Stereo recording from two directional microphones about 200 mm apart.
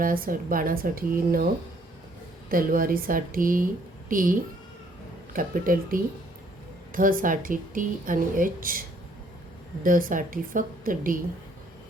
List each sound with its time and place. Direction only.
0.0 s speech: 45° right (ahead or behind)
2.5 s speech: 45° right (ahead or behind)
9.8 s speech: 45° right (ahead or behind)